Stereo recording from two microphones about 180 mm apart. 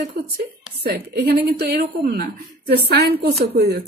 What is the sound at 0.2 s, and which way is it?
Speech, 65° right (ahead or behind).